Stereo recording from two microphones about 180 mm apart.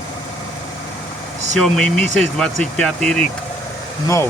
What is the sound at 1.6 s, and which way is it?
Speech, 5° left (ahead or behind).